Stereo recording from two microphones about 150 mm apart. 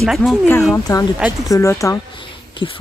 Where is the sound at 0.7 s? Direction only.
20° left (ahead or behind).